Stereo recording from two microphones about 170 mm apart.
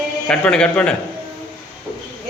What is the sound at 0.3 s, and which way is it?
Speech, 5° left (ahead or behind).